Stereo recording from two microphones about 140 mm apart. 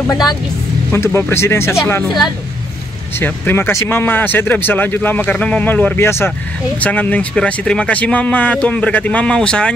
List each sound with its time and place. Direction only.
0.9 s speech: 20° left (ahead or behind)
3.2 s speech: 15° left (ahead or behind)